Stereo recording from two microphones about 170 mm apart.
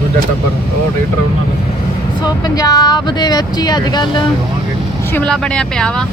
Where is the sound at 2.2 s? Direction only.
25° left (ahead or behind).